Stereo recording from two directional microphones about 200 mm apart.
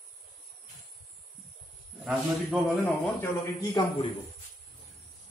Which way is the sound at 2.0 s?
Centre (ahead or behind).